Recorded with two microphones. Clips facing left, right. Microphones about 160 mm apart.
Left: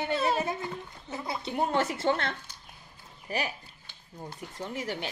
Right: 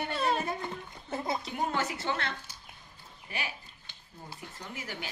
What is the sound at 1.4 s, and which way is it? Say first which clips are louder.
Speech: left 4 dB; 35° left (ahead or behind).